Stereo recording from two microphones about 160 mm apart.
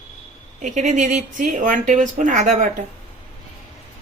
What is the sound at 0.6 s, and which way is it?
A woman's voice, 50° right (ahead or behind).